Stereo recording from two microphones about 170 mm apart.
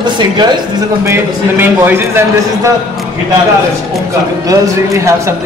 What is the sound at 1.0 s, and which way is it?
A man's voice, 15° right (ahead or behind).